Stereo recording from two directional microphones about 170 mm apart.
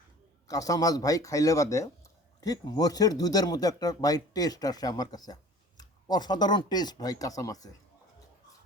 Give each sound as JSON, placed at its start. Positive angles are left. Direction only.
{"t": 0.4, "sound": "speech", "side_deg": 20}